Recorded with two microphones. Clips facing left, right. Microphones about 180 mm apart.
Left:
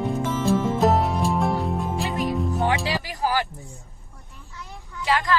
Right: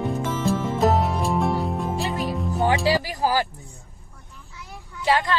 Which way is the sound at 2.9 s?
30° right (ahead or behind).